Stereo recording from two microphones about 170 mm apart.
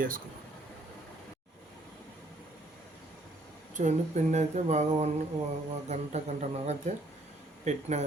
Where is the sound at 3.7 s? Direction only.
45° right (ahead or behind).